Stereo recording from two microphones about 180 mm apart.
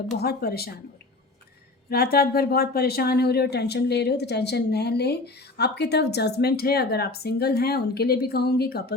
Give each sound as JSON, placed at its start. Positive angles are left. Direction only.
{"t": 0.1, "sound": "speech", "side_deg": 60}
{"t": 1.9, "sound": "speech", "side_deg": 60}